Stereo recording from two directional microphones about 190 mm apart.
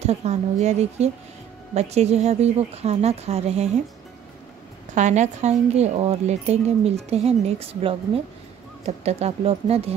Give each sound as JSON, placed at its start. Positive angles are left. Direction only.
{"t": 0.0, "sound": "speech", "side_deg": -35}
{"t": 4.9, "sound": "speech", "side_deg": -40}